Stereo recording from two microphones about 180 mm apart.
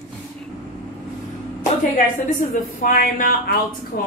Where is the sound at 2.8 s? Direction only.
50° left (ahead or behind).